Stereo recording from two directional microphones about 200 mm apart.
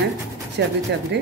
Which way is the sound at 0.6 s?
55° right (ahead or behind).